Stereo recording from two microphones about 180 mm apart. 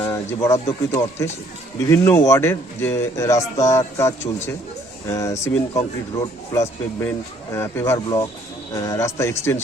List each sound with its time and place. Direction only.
0.0 s speech: 15° left (ahead or behind)